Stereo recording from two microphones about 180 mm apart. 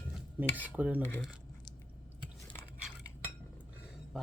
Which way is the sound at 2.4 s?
25° left (ahead or behind).